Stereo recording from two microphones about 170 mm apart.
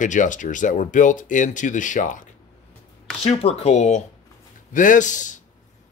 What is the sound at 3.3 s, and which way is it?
Speech, 35° left (ahead or behind).